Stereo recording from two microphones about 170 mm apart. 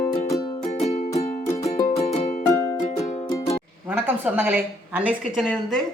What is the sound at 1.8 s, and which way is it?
Music, 40° left (ahead or behind).